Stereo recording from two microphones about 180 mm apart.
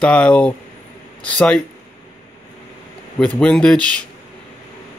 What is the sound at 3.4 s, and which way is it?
Speech, 5° left (ahead or behind).